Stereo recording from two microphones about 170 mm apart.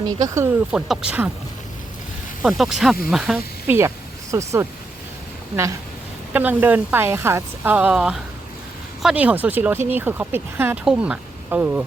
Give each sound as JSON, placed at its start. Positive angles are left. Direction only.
{"t": 0.2, "sound": "speech", "side_deg": -20}
{"t": 0.7, "sound": "speech", "side_deg": -5}
{"t": 2.4, "sound": "speech", "side_deg": 0}
{"t": 3.8, "sound": "speech", "side_deg": -15}
{"t": 6.3, "sound": "speech", "side_deg": -10}